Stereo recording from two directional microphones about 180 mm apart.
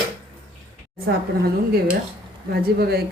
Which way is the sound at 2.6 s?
60° right (ahead or behind).